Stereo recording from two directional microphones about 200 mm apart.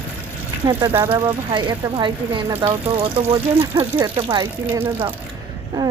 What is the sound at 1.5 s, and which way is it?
Speech, 25° right (ahead or behind).